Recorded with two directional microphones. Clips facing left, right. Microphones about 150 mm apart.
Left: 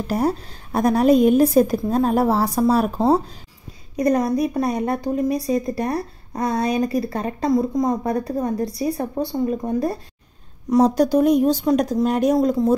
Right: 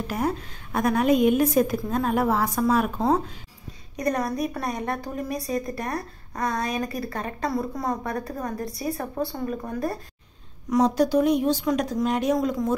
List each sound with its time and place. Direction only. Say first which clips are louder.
0.0 s a woman's voice: left 5 dB; 35° left (ahead or behind)
7.5 s a woman's voice: left 11 dB; 15° left (ahead or behind)
8.1 s a woman's voice: left 7 dB; 25° left (ahead or behind)
10.7 s a woman's voice: left 4 dB; 40° left (ahead or behind)